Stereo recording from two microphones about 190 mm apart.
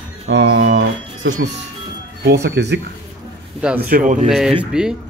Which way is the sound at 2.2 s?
60° right (ahead or behind).